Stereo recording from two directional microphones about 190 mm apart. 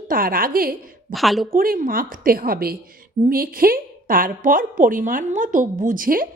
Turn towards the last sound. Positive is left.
turn(degrees=-45)  # may be behind; listen again after turning